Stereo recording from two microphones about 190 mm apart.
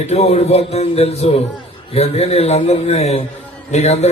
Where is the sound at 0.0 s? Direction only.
35° left (ahead or behind).